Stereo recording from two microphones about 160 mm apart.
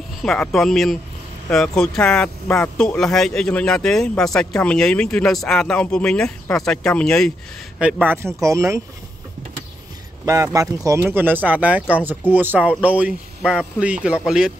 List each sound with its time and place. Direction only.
0.2 s speech: 5° left (ahead or behind)
7.8 s speech: 10° right (ahead or behind)
10.2 s speech: 20° right (ahead or behind); by 14.5 s 5° right (ahead or behind)